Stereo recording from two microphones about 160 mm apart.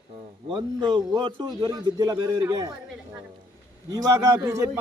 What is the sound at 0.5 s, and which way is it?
A man's voice, 30° right (ahead or behind).